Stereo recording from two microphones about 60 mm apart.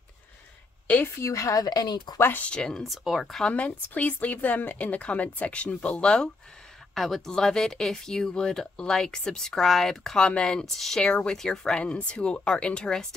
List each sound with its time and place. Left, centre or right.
1.0 s speech: left
2.1 s speech: left
2.4 s speech: centre
2.8 s speech: centre
3.5 s a woman's voice: left
6.9 s speech: centre
10.2 s speech: centre